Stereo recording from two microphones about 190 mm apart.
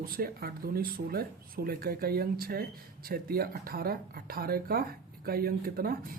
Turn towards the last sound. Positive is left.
turn(degrees=-50)  # may be behind; listen again after turning